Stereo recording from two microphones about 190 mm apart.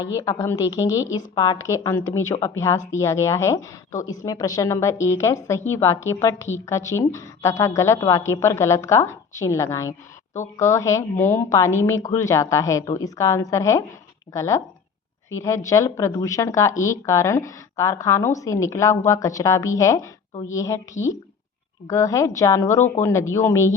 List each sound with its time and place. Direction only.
0.1 s a woman's voice: 15° left (ahead or behind)